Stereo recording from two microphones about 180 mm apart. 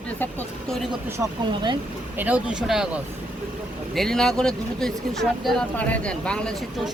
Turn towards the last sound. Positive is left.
turn(degrees=5)  # may be behind; listen again after turning